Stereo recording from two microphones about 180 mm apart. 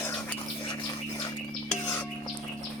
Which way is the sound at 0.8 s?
20° left (ahead or behind).